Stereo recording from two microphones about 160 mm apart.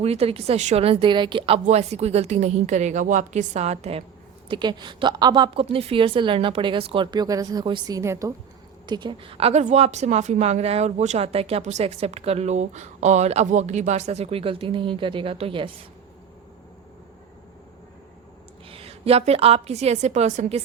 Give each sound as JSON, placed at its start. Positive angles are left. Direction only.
{"t": 0.0, "sound": "a woman's voice", "side_deg": -40}
{"t": 4.4, "sound": "a woman's voice", "side_deg": -30}
{"t": 18.7, "sound": "a woman's voice", "side_deg": -35}